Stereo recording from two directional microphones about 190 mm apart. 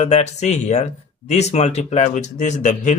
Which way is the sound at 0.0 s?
35° left (ahead or behind).